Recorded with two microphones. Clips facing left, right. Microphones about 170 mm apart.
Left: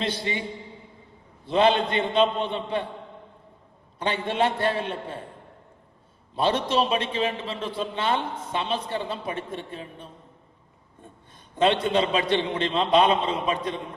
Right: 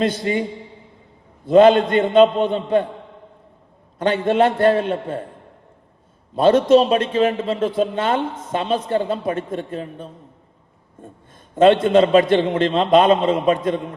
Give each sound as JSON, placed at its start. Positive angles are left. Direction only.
{"t": 0.0, "sound": "a woman's voice", "side_deg": -45}
{"t": 1.5, "sound": "a woman's voice", "side_deg": -50}
{"t": 3.9, "sound": "a woman's voice", "side_deg": -50}
{"t": 6.3, "sound": "a woman's voice", "side_deg": -50}
{"t": 11.5, "sound": "a woman's voice", "side_deg": -50}